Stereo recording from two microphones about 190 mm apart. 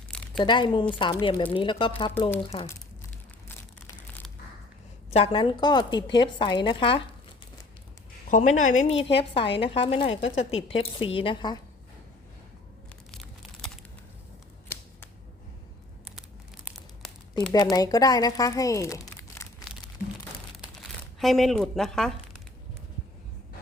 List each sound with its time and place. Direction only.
0.3 s speech: 25° left (ahead or behind)
5.1 s speech: 30° left (ahead or behind)
8.3 s a woman's voice: 45° left (ahead or behind); by 11.6 s 25° left (ahead or behind)
13.1 s crumpling: 5° left (ahead or behind)
17.5 s speech: 20° left (ahead or behind)
21.2 s speech: centre (ahead or behind)